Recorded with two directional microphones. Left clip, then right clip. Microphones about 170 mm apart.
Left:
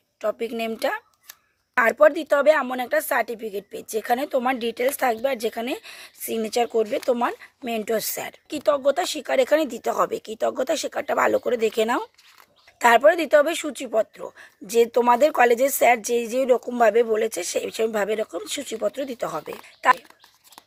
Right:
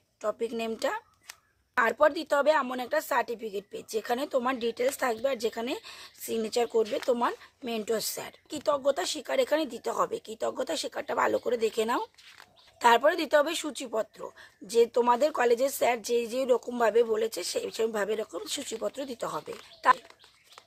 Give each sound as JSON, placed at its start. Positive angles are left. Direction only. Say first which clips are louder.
{"t": 0.2, "sound": "speech", "louder": "left 5 dB", "side_deg": 20}